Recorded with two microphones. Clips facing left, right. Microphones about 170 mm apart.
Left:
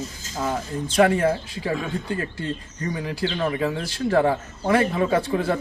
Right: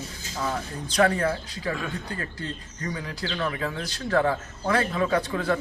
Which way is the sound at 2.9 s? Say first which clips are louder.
Left 6 dB; 20° left (ahead or behind).